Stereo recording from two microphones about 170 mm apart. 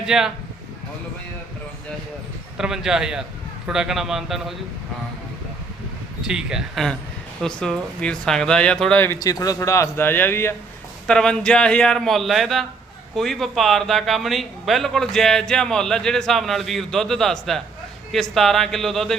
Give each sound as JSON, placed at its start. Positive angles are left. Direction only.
{"t": 0.0, "sound": "speech", "side_deg": -5}
{"t": 2.6, "sound": "speech", "side_deg": -5}
{"t": 6.2, "sound": "speech", "side_deg": -5}
{"t": 9.1, "sound": "a man's voice", "side_deg": 20}